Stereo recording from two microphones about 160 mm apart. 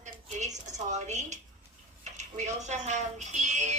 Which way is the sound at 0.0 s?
45° right (ahead or behind).